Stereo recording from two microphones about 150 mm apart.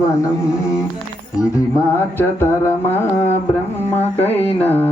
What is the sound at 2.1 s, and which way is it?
Mantra, 15° left (ahead or behind).